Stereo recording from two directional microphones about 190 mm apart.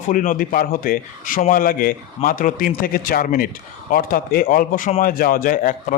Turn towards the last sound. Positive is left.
turn(degrees=45)  # may be behind; listen again after turning